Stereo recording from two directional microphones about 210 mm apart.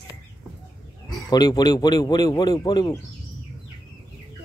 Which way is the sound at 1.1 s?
15° left (ahead or behind).